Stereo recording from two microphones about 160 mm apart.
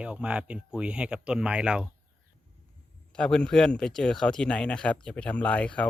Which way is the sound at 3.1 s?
5° left (ahead or behind).